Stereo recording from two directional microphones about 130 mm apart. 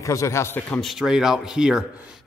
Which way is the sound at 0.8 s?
Centre (ahead or behind).